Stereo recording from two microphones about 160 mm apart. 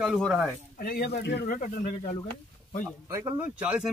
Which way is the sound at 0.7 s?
70° left (ahead or behind).